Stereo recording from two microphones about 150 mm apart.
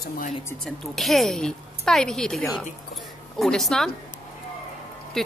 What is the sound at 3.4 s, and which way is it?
Speech, centre (ahead or behind).